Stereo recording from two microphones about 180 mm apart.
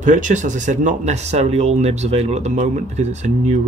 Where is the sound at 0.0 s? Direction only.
45° right (ahead or behind).